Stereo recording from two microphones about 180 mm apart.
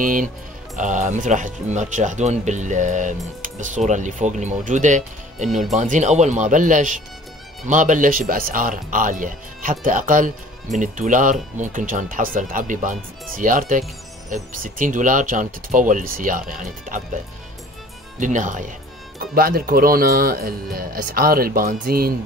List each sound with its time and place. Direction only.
0.0 s speech: 50° right (ahead or behind)
18.2 s speech: 45° right (ahead or behind)